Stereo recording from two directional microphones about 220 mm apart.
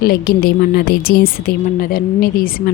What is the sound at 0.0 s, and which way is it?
A woman's voice, 45° left (ahead or behind).